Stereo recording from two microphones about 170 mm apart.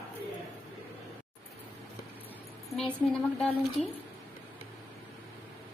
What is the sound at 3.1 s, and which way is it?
Speech, 5° left (ahead or behind).